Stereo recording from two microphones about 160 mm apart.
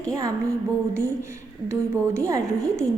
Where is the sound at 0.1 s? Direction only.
20° right (ahead or behind).